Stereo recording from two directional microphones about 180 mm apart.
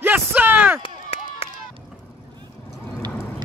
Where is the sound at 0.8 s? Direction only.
35° left (ahead or behind).